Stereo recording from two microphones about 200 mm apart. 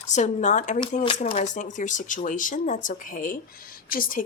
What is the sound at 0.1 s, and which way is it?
Speech, 35° left (ahead or behind).